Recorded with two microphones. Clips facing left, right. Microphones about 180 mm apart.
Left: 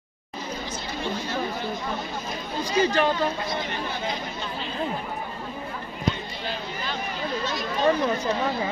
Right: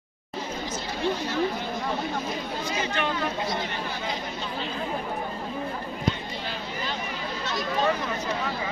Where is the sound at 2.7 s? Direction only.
35° left (ahead or behind).